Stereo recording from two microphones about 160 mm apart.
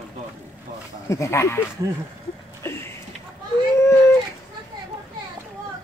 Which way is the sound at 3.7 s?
15° left (ahead or behind).